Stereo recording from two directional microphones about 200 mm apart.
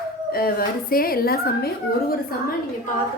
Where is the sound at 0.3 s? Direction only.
45° left (ahead or behind).